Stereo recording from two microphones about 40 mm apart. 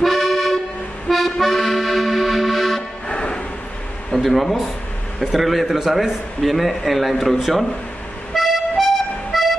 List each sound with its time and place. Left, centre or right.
0.0 s accordion: centre
3.1 s music: left
4.1 s a man's voice: centre
8.3 s music: centre